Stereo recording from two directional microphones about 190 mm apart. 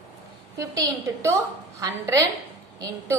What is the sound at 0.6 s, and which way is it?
A woman's voice, 15° right (ahead or behind).